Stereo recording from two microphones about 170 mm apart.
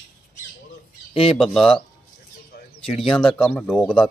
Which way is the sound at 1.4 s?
Centre (ahead or behind).